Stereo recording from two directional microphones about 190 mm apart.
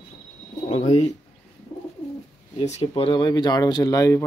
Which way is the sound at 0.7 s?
35° left (ahead or behind).